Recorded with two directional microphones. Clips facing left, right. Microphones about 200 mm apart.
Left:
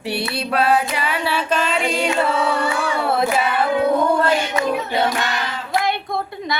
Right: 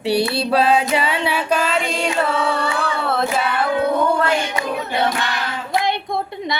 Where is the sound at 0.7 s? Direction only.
25° right (ahead or behind).